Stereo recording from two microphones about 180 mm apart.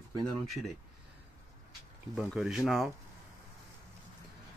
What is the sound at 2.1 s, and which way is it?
Speech, 5° right (ahead or behind).